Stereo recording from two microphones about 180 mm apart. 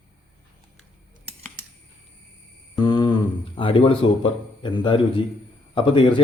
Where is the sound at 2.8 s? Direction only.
25° left (ahead or behind).